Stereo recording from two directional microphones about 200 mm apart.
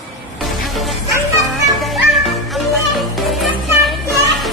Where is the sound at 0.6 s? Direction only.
Centre (ahead or behind).